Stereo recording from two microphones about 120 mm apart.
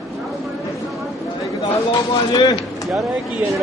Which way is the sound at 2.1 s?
35° left (ahead or behind).